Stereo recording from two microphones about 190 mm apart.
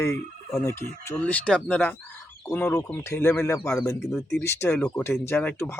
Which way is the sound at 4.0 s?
Centre (ahead or behind).